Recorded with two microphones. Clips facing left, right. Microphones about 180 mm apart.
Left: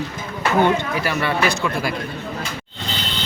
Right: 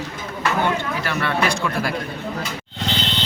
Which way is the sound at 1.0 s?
5° left (ahead or behind).